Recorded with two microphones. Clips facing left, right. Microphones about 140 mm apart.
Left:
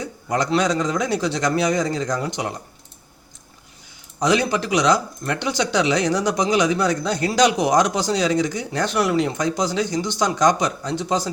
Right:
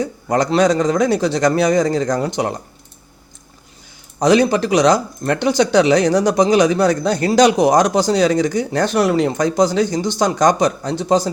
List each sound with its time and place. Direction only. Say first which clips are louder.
0.0 s a man's voice: right 5 dB; 40° right (ahead or behind)
4.2 s speech: right 6 dB; 40° right (ahead or behind)